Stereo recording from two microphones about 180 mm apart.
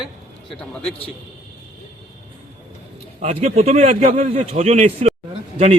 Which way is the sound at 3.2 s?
35° right (ahead or behind).